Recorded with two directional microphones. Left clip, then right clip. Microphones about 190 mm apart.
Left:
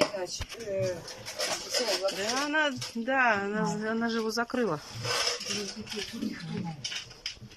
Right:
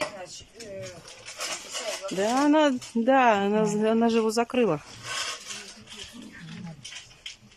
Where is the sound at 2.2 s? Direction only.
30° right (ahead or behind); by 4.8 s 15° right (ahead or behind).